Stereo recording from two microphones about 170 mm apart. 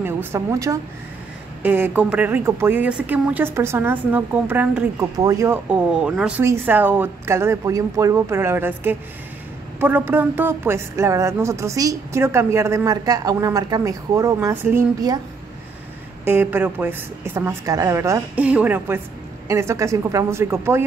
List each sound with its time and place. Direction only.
0.0 s a woman's voice: 15° right (ahead or behind)
16.3 s speech: 10° right (ahead or behind)